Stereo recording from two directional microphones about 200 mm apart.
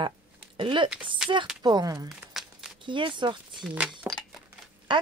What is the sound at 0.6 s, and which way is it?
A woman's voice, 25° right (ahead or behind).